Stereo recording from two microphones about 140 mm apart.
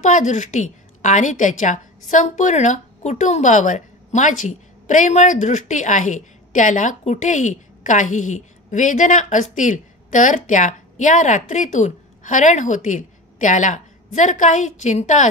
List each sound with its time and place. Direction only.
0.0 s a woman's voice: 60° left (ahead or behind)